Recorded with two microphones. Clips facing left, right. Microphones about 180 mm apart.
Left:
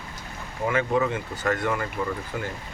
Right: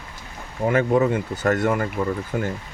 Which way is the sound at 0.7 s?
40° right (ahead or behind).